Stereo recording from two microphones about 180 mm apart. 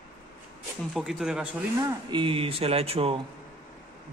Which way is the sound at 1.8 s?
25° right (ahead or behind).